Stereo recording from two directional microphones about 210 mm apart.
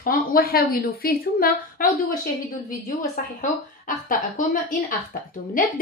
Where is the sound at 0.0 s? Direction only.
45° left (ahead or behind).